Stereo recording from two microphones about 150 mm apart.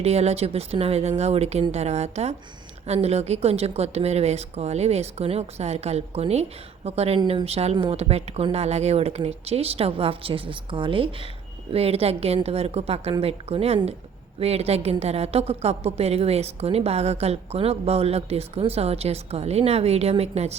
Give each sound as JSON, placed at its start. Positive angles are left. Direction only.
{"t": 0.0, "sound": "a woman's voice", "side_deg": -45}